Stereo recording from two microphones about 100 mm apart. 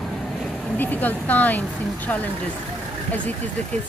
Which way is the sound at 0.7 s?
15° left (ahead or behind).